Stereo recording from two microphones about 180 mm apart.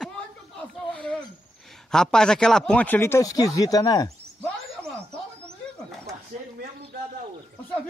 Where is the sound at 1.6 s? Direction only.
5° left (ahead or behind); by 4.1 s 20° left (ahead or behind).